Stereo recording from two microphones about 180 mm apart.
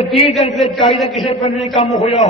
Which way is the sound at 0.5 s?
Centre (ahead or behind).